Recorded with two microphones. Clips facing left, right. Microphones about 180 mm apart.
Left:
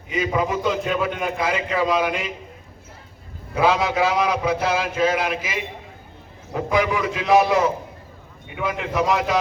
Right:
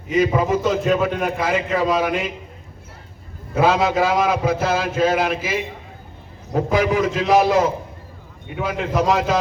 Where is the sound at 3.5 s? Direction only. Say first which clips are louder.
Right 2 dB; 45° right (ahead or behind).